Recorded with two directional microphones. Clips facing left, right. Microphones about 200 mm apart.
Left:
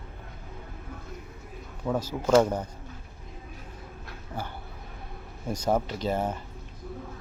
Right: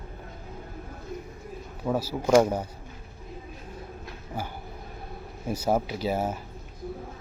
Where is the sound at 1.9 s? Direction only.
10° right (ahead or behind).